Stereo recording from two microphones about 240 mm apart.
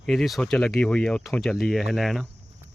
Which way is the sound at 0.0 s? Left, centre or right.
Centre.